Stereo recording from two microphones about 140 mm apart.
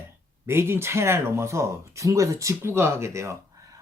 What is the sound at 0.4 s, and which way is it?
Speech, 15° right (ahead or behind).